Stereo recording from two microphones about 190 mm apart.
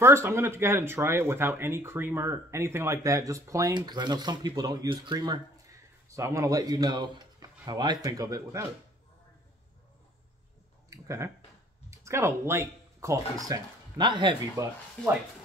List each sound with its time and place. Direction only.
0.0 s speech: 15° right (ahead or behind)
10.9 s a sound: 15° right (ahead or behind)
11.9 s speech: 15° right (ahead or behind)